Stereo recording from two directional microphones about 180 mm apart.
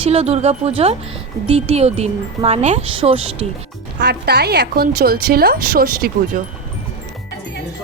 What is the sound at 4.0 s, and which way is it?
A woman's voice, 65° right (ahead or behind).